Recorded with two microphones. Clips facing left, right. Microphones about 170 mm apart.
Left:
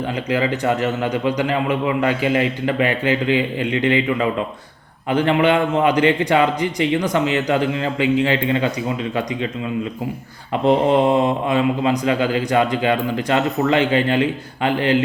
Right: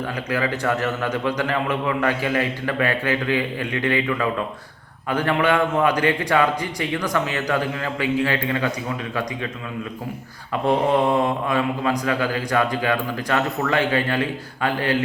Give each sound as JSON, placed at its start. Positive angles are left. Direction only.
{"t": 0.3, "sound": "speech", "side_deg": 20}
{"t": 10.7, "sound": "speech", "side_deg": 20}